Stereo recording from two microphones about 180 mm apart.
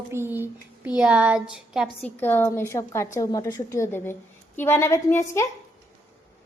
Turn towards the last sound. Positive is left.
turn(degrees=15)  # may be behind; listen again after turning